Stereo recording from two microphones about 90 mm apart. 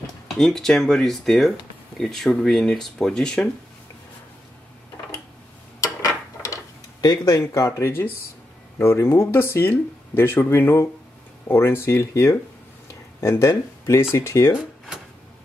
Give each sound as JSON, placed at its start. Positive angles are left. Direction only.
{"t": 0.4, "sound": "speech", "side_deg": 5}
{"t": 5.8, "sound": "a sound", "side_deg": 35}
{"t": 8.7, "sound": "speech", "side_deg": 30}